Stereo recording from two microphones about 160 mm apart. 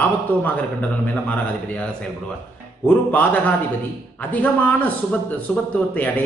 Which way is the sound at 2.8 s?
10° left (ahead or behind).